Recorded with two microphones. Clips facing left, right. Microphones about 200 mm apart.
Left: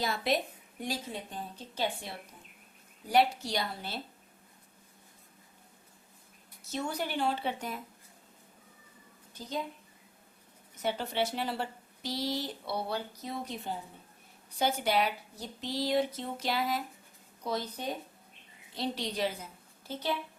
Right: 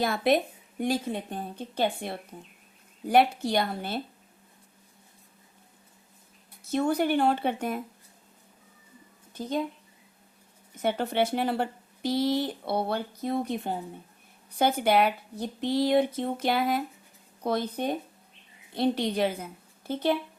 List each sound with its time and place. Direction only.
0.0 s a woman's voice: 55° right (ahead or behind)
6.7 s a woman's voice: 55° right (ahead or behind)
10.8 s a woman's voice: 55° right (ahead or behind)